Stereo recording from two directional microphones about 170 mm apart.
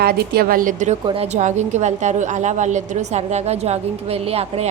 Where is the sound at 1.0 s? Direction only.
35° right (ahead or behind).